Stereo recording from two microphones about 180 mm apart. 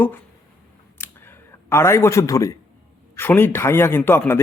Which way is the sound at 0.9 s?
10° left (ahead or behind).